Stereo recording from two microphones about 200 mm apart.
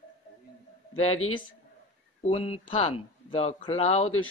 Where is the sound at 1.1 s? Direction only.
90° left.